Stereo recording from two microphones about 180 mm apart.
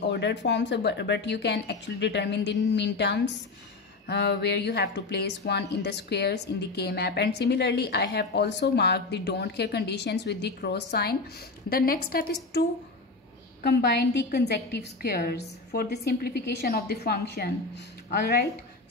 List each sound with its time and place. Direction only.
0.1 s speech: 75° left (ahead or behind)
11.7 s a woman's voice: 55° left (ahead or behind)
13.7 s a woman's voice: 65° left (ahead or behind)